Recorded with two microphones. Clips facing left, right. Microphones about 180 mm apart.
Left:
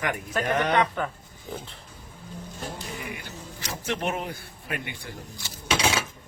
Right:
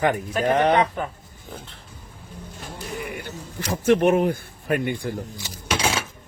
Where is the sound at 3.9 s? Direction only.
55° right (ahead or behind).